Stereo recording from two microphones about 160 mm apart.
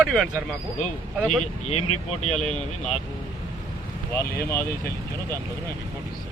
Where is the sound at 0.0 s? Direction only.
Centre (ahead or behind).